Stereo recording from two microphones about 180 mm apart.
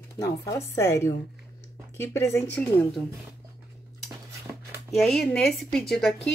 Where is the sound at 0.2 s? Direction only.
15° left (ahead or behind).